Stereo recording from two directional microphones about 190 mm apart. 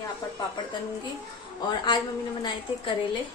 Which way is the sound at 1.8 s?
25° left (ahead or behind).